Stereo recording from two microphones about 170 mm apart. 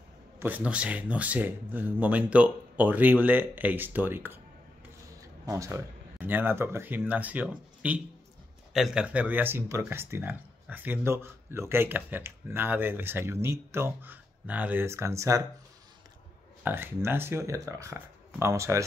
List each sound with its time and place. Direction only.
0.4 s speech: 10° right (ahead or behind)
5.5 s speech: 15° right (ahead or behind)
16.6 s speech: 15° right (ahead or behind)